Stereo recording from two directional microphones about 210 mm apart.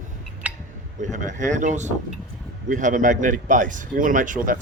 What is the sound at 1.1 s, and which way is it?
Speech, 35° right (ahead or behind).